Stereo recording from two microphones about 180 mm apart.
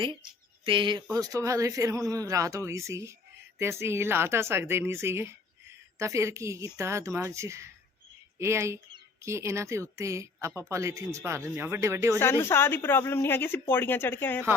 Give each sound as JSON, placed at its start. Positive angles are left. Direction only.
{"t": 0.6, "sound": "a woman's voice", "side_deg": -30}
{"t": 12.2, "sound": "speech", "side_deg": 15}